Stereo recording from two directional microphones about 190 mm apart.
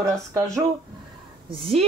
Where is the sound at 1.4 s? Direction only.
30° right (ahead or behind).